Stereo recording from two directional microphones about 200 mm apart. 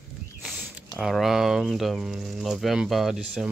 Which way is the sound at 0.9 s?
Centre (ahead or behind).